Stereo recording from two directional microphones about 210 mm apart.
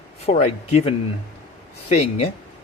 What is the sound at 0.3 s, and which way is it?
Speech, 30° left (ahead or behind).